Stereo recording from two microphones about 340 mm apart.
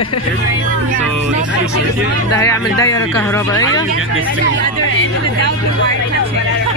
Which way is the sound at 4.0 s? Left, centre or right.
Right.